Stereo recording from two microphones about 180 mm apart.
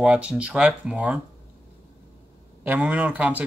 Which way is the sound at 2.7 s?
5° right (ahead or behind).